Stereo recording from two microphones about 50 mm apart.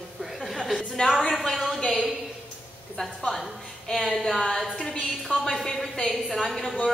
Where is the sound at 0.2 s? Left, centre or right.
Centre.